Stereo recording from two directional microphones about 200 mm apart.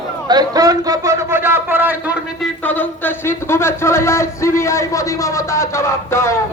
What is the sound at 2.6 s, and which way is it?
Speech, 10° left (ahead or behind).